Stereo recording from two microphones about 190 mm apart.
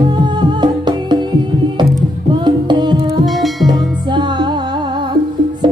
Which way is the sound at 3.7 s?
25° right (ahead or behind).